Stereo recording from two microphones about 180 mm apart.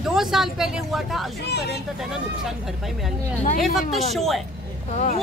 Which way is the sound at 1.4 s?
70° left (ahead or behind).